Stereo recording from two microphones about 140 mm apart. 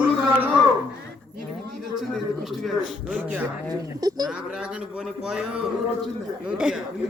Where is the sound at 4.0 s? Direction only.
30° right (ahead or behind).